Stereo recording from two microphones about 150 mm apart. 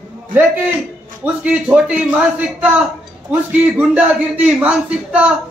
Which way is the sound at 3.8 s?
10° right (ahead or behind).